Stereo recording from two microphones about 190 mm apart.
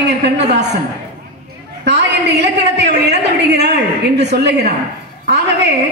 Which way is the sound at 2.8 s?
60° right (ahead or behind).